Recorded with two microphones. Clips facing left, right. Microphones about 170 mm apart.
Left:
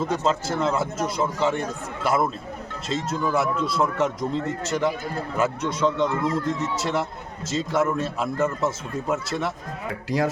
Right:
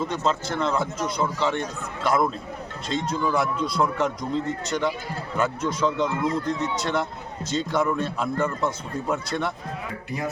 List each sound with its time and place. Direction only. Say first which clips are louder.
0.1 s speech: left 2 dB; 5° left (ahead or behind)
10.1 s speech: left 7 dB; 90° left